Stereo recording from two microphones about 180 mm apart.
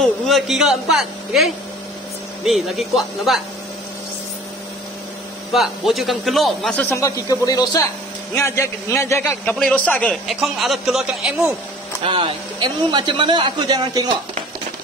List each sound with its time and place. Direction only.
0.0 s a man's voice: centre (ahead or behind)
5.5 s a man's voice: centre (ahead or behind)
12.1 s speech: 25° right (ahead or behind)